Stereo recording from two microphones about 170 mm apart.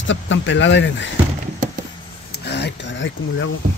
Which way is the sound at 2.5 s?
85° left.